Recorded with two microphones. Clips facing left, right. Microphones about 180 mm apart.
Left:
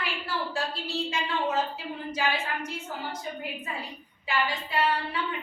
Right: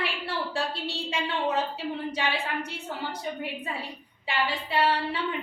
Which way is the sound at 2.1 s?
30° right (ahead or behind).